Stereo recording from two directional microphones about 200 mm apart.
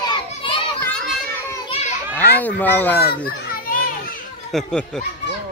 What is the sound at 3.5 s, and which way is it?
Children playing, 45° left (ahead or behind).